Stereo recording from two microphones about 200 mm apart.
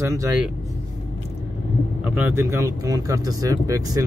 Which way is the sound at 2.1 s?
10° right (ahead or behind).